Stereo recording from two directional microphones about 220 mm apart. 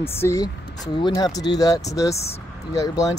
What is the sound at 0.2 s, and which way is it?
Speech, 15° left (ahead or behind).